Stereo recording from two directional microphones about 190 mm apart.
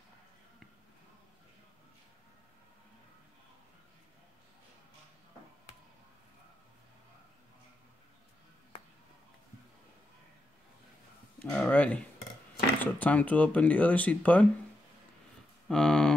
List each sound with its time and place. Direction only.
11.3 s a sound: centre (ahead or behind)
12.7 s speech: 10° left (ahead or behind)
15.7 s speech: 5° left (ahead or behind)